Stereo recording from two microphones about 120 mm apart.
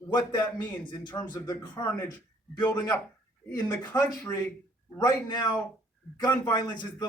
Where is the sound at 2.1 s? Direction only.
15° left (ahead or behind).